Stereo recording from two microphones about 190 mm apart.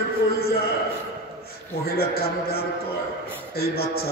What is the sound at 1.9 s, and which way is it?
A man's voice, 55° left (ahead or behind).